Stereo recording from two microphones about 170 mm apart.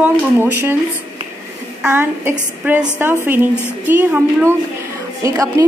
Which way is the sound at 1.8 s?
10° right (ahead or behind).